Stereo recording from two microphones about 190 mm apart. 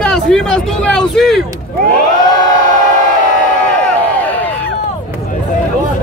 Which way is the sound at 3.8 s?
10° left (ahead or behind).